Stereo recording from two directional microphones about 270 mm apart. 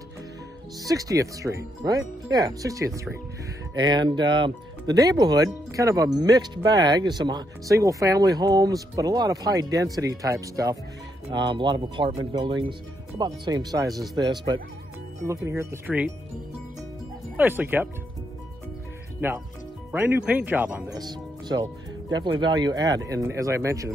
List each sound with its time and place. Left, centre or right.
0.8 s speech: centre
17.4 s speech: centre
19.9 s speech: centre